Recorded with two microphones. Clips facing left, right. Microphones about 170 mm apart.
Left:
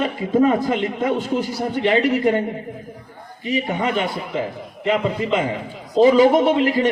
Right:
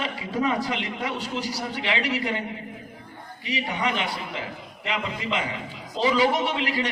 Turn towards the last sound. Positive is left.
turn(degrees=45)  # may be behind; listen again after turning